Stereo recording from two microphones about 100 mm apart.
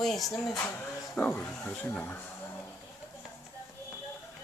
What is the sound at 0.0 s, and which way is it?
Speech, 5° left (ahead or behind).